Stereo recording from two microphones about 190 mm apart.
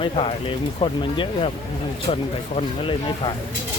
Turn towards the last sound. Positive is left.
turn(degrees=25)  # may be behind; listen again after turning